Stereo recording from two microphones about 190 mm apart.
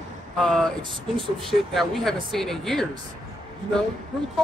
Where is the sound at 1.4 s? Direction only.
Centre (ahead or behind).